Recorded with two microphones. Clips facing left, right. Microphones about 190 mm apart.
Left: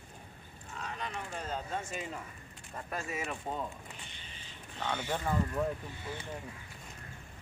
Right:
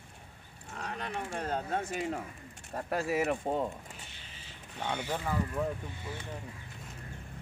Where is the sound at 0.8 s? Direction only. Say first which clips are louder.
Right 3 dB; 60° right (ahead or behind).